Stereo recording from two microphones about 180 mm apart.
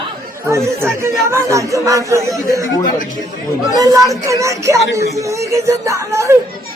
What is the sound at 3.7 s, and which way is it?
Speech, 20° right (ahead or behind).